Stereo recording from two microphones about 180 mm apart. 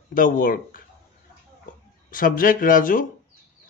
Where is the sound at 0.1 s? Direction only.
50° left (ahead or behind).